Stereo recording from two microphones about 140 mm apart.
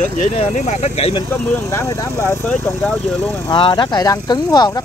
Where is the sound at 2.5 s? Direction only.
10° left (ahead or behind).